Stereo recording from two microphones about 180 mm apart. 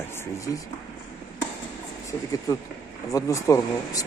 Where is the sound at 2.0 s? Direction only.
20° left (ahead or behind).